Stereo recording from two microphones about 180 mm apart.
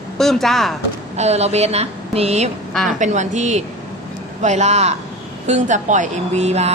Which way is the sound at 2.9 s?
40° right (ahead or behind).